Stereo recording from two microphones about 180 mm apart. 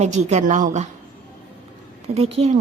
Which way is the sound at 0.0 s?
40° right (ahead or behind).